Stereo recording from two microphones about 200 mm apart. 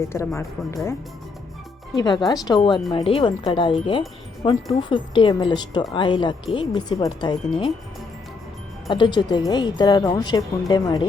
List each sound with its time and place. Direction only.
0.0 s speech: 15° left (ahead or behind)
2.0 s speech: 20° left (ahead or behind)
8.9 s speech: 20° left (ahead or behind)